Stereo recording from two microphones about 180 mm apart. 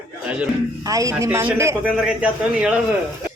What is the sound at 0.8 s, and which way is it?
A woman's voice, 20° right (ahead or behind).